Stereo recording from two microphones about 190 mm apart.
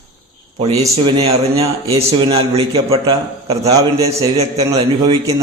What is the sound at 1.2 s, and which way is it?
A man's voice, 30° right (ahead or behind).